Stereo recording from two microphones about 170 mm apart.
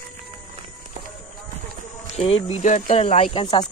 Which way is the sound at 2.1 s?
35° left (ahead or behind).